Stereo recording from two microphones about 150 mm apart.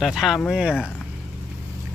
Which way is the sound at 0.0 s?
Centre (ahead or behind).